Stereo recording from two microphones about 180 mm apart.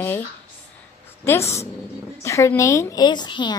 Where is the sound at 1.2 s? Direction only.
15° left (ahead or behind).